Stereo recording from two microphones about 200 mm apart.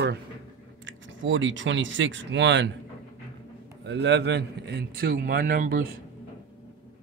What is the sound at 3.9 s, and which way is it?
A man's voice, 60° right (ahead or behind).